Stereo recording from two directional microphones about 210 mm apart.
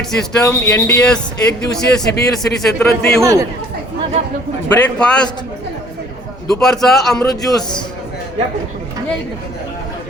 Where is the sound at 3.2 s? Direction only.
15° right (ahead or behind).